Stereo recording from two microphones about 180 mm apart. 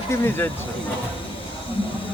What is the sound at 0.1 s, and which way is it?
Speech, 10° left (ahead or behind).